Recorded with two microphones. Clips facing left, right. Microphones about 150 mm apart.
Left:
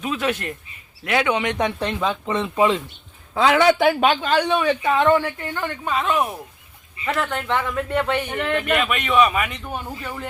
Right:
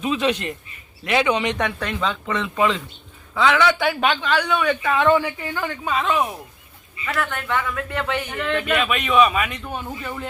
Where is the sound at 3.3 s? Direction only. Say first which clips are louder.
Left 2 dB; 40° left (ahead or behind).